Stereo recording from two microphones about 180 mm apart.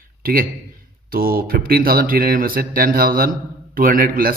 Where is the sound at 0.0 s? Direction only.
55° right (ahead or behind).